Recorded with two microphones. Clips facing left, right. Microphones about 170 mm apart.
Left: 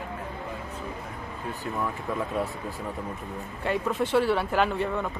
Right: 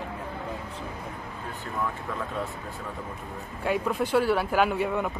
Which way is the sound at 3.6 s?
Centre (ahead or behind).